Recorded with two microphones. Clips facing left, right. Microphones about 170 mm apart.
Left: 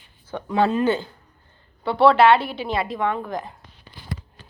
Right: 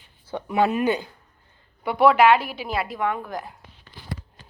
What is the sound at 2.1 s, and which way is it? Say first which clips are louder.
A woman's voice: left 1 dB; 10° right (ahead or behind).